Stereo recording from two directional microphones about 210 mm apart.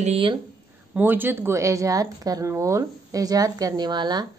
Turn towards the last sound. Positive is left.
turn(degrees=-20)  # may be behind; listen again after turning